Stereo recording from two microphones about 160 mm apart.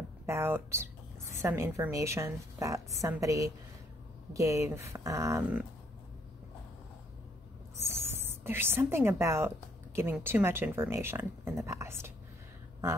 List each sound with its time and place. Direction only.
0.3 s a woman's voice: 15° right (ahead or behind)
8.2 s a woman's voice: 15° right (ahead or behind)